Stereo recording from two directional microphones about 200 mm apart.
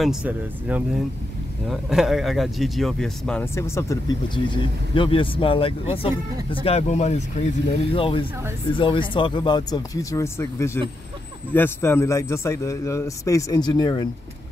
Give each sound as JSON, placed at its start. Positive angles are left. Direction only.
{"t": 0.0, "sound": "speech", "side_deg": -5}
{"t": 3.5, "sound": "a man's voice", "side_deg": 15}